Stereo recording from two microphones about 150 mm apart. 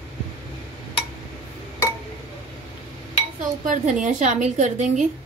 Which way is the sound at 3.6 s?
55° right (ahead or behind).